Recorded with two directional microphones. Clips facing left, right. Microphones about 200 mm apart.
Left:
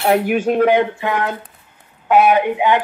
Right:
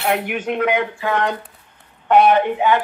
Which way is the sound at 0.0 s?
35° left (ahead or behind).